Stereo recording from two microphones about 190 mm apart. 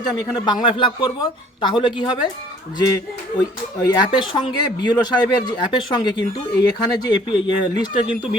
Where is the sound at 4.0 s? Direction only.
25° left (ahead or behind).